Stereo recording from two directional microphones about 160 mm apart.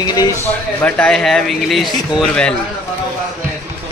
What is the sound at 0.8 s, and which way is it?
Speech, 10° left (ahead or behind).